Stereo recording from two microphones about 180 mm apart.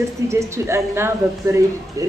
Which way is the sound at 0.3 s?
15° right (ahead or behind).